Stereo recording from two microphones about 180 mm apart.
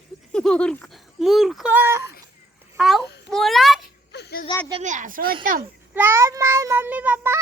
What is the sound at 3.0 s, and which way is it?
Babbling, 70° left (ahead or behind).